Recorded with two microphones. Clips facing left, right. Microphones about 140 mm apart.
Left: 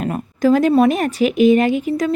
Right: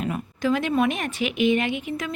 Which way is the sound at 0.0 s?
40° left (ahead or behind).